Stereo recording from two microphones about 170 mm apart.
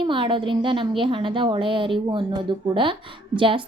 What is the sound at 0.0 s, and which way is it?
A woman's voice, 30° right (ahead or behind).